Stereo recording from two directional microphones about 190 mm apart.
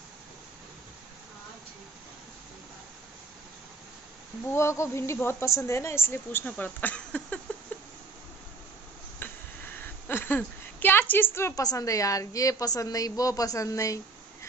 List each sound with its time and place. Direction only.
4.5 s a woman's voice: 15° left (ahead or behind)
9.2 s a sound: 10° left (ahead or behind)
9.8 s a woman's voice: 10° left (ahead or behind)